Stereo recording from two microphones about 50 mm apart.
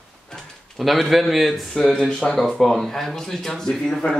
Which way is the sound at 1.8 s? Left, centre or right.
Centre.